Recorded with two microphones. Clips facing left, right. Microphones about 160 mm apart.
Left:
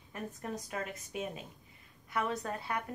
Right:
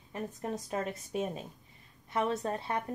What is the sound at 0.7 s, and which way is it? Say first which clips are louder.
A woman's voice: right 5 dB; 30° right (ahead or behind).